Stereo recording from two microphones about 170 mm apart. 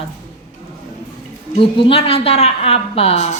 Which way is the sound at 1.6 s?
30° left (ahead or behind).